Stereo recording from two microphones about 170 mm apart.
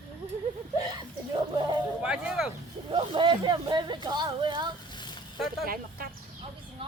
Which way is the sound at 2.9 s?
30° right (ahead or behind).